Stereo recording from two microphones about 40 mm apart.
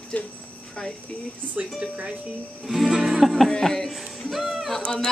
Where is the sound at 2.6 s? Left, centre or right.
Centre.